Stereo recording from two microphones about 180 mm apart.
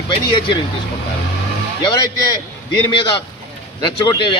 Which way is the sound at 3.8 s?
25° left (ahead or behind).